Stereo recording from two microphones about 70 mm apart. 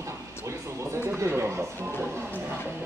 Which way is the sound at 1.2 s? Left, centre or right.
Right.